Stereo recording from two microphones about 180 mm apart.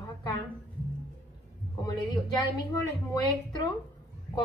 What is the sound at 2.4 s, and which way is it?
A woman's voice, 20° left (ahead or behind).